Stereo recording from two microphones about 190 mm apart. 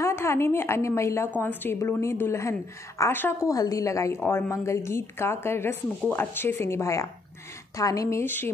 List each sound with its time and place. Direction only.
0.0 s a woman's voice: 15° left (ahead or behind)